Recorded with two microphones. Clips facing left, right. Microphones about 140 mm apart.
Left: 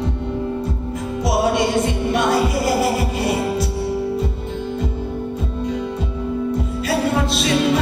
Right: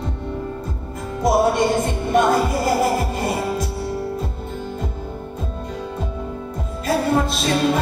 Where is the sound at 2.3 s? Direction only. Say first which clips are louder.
Left 1 dB; 10° left (ahead or behind).